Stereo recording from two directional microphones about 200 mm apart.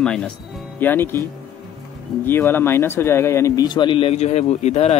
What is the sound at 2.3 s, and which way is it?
Speech, 10° left (ahead or behind).